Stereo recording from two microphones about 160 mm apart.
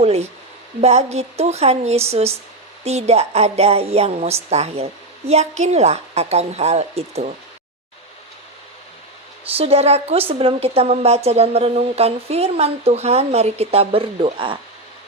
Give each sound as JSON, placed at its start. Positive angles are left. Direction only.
{"t": 0.0, "sound": "a woman's voice", "side_deg": -40}
{"t": 9.6, "sound": "a woman's voice", "side_deg": -40}